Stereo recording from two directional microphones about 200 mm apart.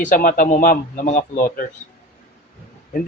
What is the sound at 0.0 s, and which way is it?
A man's voice, 40° left (ahead or behind).